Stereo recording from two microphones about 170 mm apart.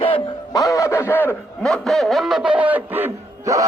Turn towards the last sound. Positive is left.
turn(degrees=-15)  # may be behind; listen again after turning